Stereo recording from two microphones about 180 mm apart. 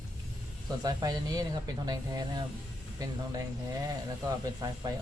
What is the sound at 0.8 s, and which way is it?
Speech, 20° right (ahead or behind).